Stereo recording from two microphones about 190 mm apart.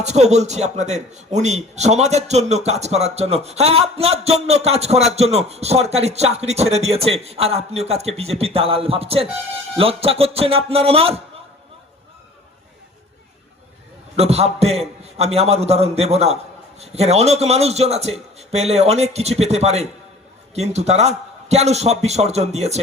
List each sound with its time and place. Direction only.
0.0 s a man's voice: 35° right (ahead or behind)
14.2 s a man's voice: 35° right (ahead or behind)